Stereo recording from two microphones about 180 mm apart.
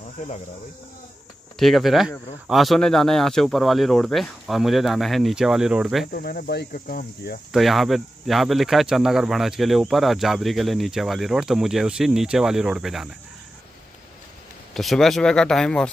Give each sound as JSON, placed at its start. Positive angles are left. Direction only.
{"t": 1.6, "sound": "speech", "side_deg": 0}
{"t": 6.1, "sound": "cricket", "side_deg": 60}
{"t": 7.5, "sound": "speech", "side_deg": 0}
{"t": 14.7, "sound": "speech", "side_deg": 0}